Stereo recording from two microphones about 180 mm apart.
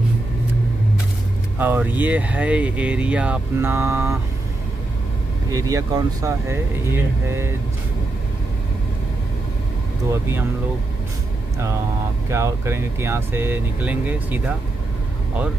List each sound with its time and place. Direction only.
1.6 s speech: 10° right (ahead or behind)
5.5 s speech: 20° right (ahead or behind)
12.3 s speech: 15° right (ahead or behind)